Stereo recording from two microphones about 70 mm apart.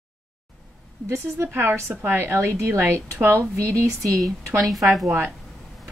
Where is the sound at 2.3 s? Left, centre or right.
Right.